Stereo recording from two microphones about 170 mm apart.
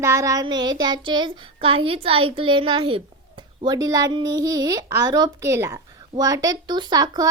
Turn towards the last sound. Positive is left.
turn(degrees=-20)  # may be behind; listen again after turning